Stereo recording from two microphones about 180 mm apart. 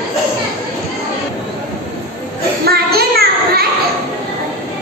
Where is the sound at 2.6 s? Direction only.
60° right (ahead or behind).